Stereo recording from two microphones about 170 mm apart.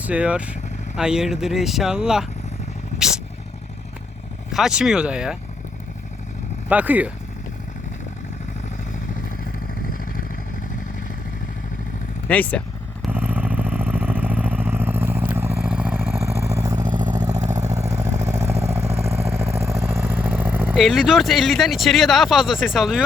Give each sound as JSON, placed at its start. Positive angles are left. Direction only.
{"t": 0.0, "sound": "speech", "side_deg": -5}
{"t": 4.5, "sound": "speech", "side_deg": -5}
{"t": 6.7, "sound": "speech", "side_deg": -10}
{"t": 12.3, "sound": "vehicle", "side_deg": 10}
{"t": 13.1, "sound": "vehicle", "side_deg": -10}
{"t": 20.7, "sound": "speech", "side_deg": 0}